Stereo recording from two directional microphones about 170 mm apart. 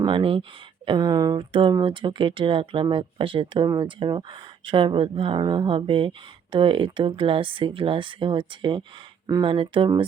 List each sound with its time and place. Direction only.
0.0 s speech: 30° right (ahead or behind)